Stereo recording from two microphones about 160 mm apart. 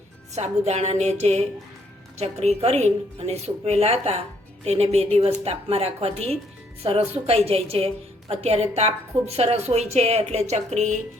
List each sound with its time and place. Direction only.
0.3 s a woman's voice: 45° right (ahead or behind)